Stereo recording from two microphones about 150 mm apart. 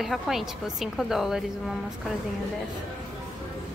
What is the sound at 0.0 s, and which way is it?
A woman's voice, centre (ahead or behind).